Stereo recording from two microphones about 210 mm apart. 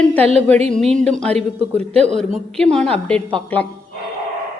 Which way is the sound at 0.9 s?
5° left (ahead or behind).